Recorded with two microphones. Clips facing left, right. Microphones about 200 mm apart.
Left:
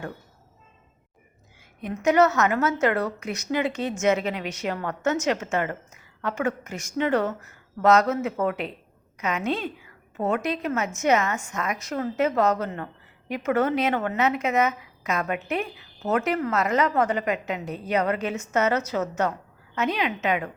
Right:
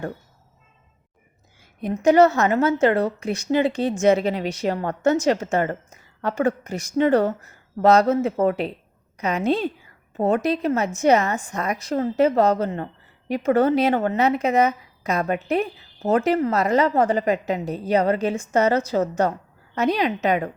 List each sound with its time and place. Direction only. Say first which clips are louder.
1.8 s a woman's voice: right 5 dB; 30° right (ahead or behind)